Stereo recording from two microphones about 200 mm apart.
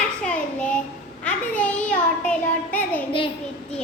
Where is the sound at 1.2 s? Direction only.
5° left (ahead or behind).